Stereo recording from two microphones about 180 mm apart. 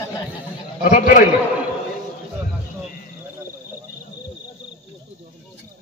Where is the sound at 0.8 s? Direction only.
40° left (ahead or behind).